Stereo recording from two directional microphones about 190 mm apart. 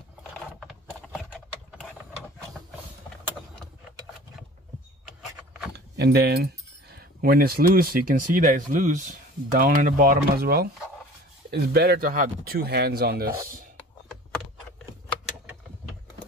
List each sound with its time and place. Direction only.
0.6 s a sound: centre (ahead or behind)
5.0 s vehicle: centre (ahead or behind)
5.7 s speech: 60° right (ahead or behind)